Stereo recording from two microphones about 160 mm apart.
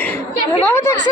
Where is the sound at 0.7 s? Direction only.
15° left (ahead or behind).